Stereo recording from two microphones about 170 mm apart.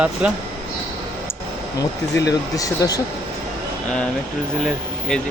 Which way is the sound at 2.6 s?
20° left (ahead or behind).